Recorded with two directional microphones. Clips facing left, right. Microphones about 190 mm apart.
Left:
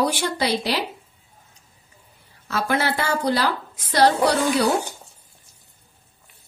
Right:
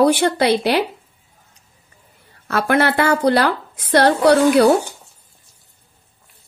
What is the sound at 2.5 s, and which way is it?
Speech, 60° right (ahead or behind).